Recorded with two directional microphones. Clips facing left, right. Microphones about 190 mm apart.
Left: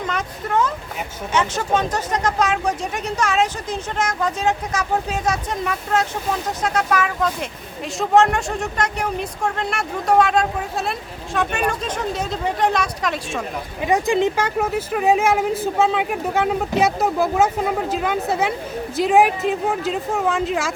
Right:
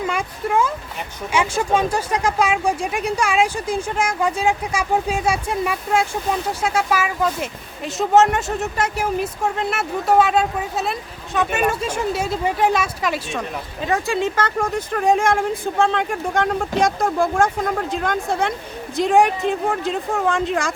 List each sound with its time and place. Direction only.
0.1 s speech: 10° right (ahead or behind)
13.8 s speech: 15° left (ahead or behind); by 20.7 s centre (ahead or behind)